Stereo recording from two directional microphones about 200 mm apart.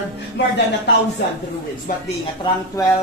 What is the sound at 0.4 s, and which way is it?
Speech, 60° left (ahead or behind).